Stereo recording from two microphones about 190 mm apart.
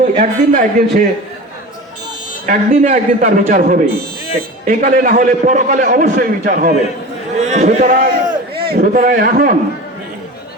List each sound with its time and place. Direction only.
0.0 s a man's voice: 40° right (ahead or behind)
2.5 s a man's voice: 45° right (ahead or behind)
8.2 s a sound: 20° right (ahead or behind)
8.6 s a man's voice: 55° right (ahead or behind)